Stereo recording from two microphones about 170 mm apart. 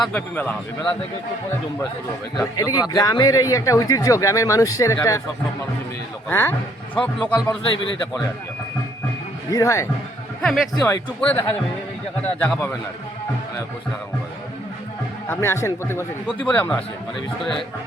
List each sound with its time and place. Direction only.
0.0 s speech: 10° left (ahead or behind)
2.3 s speech: 20° left (ahead or behind)
6.2 s speech: 15° left (ahead or behind)
9.5 s speech: 20° left (ahead or behind)
10.4 s speech: centre (ahead or behind)
15.3 s speech: 15° left (ahead or behind)